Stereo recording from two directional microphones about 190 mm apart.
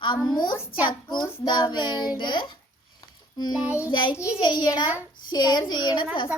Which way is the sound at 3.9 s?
25° left (ahead or behind).